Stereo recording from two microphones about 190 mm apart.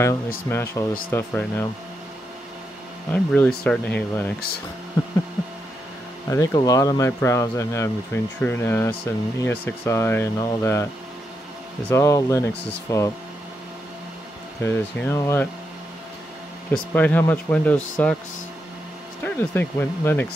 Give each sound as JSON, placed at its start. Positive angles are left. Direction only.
{"t": 0.5, "sound": "speech", "side_deg": 15}
{"t": 3.1, "sound": "speech", "side_deg": 5}
{"t": 6.2, "sound": "speech", "side_deg": 15}
{"t": 11.9, "sound": "speech", "side_deg": 15}
{"t": 14.6, "sound": "speech", "side_deg": 10}
{"t": 16.7, "sound": "speech", "side_deg": 10}
{"t": 19.2, "sound": "speech", "side_deg": 10}